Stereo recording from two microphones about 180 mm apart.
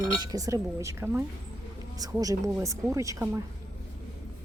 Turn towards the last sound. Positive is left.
turn(degrees=-15)  # may be behind; listen again after turning